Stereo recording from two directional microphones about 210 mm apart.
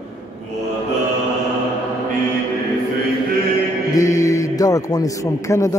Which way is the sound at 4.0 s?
15° left (ahead or behind).